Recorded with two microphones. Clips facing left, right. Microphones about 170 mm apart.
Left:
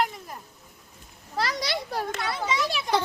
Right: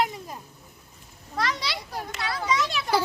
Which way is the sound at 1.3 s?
35° left (ahead or behind).